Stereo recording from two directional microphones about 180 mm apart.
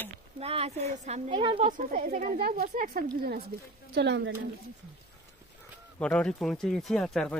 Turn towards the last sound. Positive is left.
turn(degrees=5)  # may be behind; listen again after turning